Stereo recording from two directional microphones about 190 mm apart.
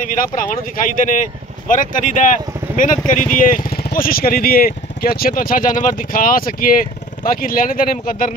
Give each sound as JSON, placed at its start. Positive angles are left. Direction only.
{"t": 0.0, "sound": "speech", "side_deg": 45}